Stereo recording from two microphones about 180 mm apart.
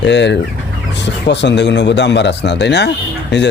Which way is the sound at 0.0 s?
75° left (ahead or behind).